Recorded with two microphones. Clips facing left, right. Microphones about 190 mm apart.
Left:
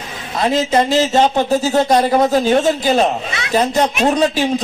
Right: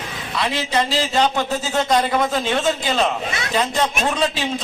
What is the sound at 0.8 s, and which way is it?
A man's voice, 45° left (ahead or behind).